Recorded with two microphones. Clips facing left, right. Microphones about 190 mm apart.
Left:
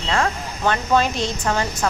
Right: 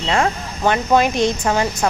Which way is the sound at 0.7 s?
15° right (ahead or behind).